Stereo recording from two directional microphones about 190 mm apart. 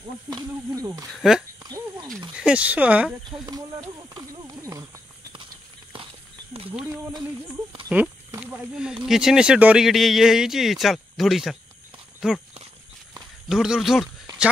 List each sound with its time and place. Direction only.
0.3 s speech: 20° right (ahead or behind)
1.1 s speech: centre (ahead or behind)
1.6 s a sound: 20° right (ahead or behind)
2.3 s speech: 5° right (ahead or behind)
5.9 s walk: 25° right (ahead or behind)
7.9 s speech: 10° right (ahead or behind)
13.5 s speech: centre (ahead or behind)